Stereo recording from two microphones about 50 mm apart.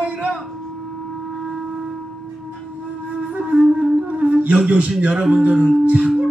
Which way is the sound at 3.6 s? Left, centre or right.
Centre.